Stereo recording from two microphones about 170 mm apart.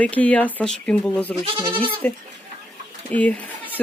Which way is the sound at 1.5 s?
30° right (ahead or behind).